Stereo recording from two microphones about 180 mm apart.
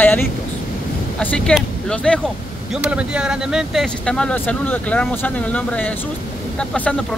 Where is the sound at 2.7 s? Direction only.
5° right (ahead or behind).